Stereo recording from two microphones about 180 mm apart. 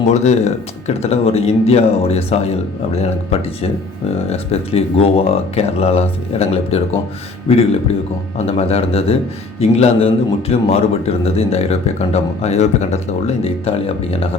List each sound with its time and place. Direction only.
0.1 s speech: 40° left (ahead or behind)
4.3 s speech: 35° left (ahead or behind)